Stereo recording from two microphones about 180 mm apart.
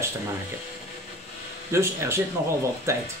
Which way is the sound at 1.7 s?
15° right (ahead or behind).